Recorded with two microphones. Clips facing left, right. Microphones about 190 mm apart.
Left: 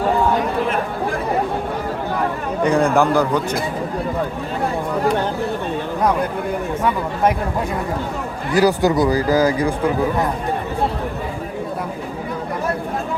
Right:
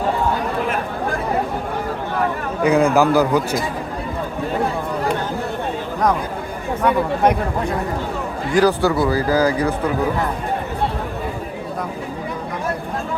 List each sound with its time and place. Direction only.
2.6 s a man's voice: centre (ahead or behind)
8.5 s speech: 15° left (ahead or behind)